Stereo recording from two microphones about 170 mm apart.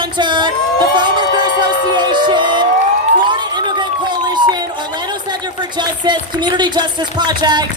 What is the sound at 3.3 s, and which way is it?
Run, 25° right (ahead or behind).